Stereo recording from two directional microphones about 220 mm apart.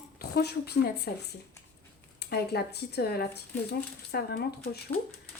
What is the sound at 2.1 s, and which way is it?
Speech, 45° left (ahead or behind).